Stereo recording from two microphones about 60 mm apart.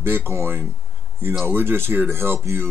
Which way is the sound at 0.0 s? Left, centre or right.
Right.